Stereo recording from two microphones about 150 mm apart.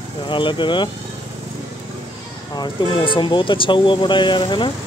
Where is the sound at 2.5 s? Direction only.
30° left (ahead or behind).